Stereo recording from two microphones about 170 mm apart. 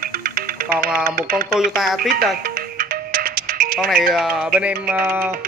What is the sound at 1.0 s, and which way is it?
Speech, 55° right (ahead or behind).